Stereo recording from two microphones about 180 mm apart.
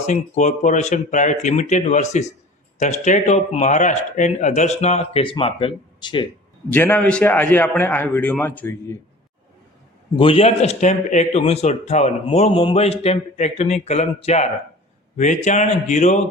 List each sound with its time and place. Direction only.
0.1 s speech: 40° left (ahead or behind); by 6.2 s 25° left (ahead or behind)
6.7 s a man's voice: 10° left (ahead or behind)
10.2 s speech: 30° left (ahead or behind)